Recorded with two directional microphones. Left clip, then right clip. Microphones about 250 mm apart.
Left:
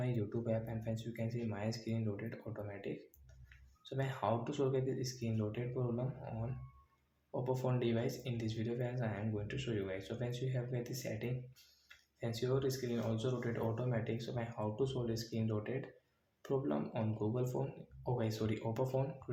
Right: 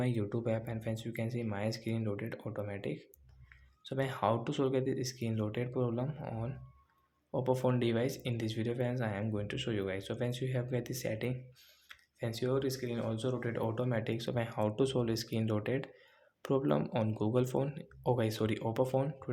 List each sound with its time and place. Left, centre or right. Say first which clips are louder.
0.0 s speech: right 5 dB; right